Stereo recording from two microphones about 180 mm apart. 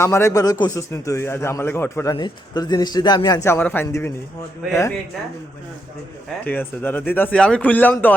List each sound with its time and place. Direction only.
0.0 s a man's voice: 15° left (ahead or behind)
6.4 s a man's voice: 10° left (ahead or behind)